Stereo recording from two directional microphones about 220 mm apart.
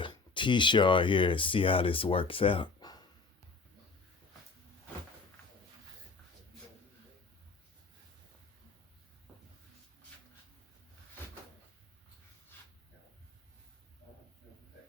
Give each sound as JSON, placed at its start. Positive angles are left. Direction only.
{"t": 0.0, "sound": "speech", "side_deg": 20}